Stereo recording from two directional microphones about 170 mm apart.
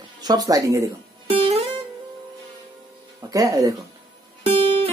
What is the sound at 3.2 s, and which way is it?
Speech, 20° right (ahead or behind).